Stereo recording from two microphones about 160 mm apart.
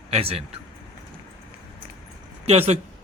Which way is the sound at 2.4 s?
40° right (ahead or behind).